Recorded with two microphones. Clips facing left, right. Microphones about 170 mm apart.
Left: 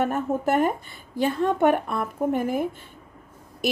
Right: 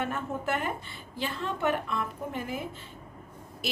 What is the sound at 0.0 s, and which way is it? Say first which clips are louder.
A woman's voice: left 8 dB; 45° left (ahead or behind).